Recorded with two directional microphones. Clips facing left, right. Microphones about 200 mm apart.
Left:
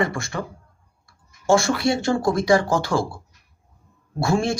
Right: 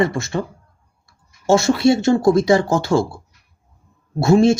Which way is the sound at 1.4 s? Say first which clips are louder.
Right 5 dB; 25° right (ahead or behind).